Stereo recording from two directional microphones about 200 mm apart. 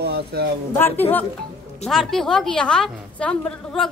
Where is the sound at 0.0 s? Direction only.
55° right (ahead or behind).